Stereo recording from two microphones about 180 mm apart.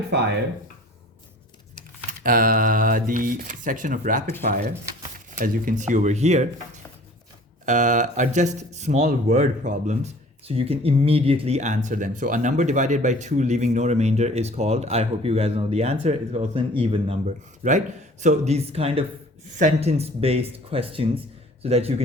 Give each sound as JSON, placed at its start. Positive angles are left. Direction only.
{"t": 2.2, "sound": "speech", "side_deg": -50}
{"t": 4.4, "sound": "speech", "side_deg": -60}
{"t": 5.3, "sound": "speech", "side_deg": -45}
{"t": 7.6, "sound": "speech", "side_deg": -45}
{"t": 17.6, "sound": "speech", "side_deg": -40}